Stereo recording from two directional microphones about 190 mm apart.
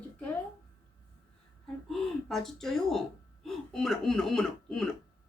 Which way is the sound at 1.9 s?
Centre (ahead or behind).